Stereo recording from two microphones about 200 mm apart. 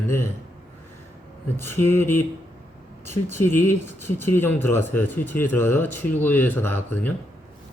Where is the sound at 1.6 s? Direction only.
10° left (ahead or behind).